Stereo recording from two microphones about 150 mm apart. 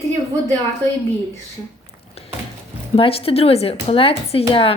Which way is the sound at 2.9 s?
40° left (ahead or behind).